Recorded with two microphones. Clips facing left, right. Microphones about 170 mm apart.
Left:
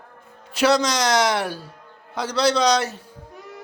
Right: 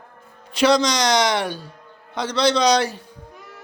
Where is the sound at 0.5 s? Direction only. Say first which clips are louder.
Right 2 dB; 5° left (ahead or behind).